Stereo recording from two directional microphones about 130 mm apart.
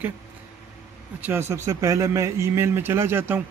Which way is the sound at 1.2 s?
20° right (ahead or behind).